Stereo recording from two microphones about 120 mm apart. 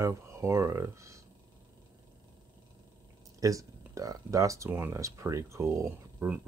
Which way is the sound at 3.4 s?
30° right (ahead or behind).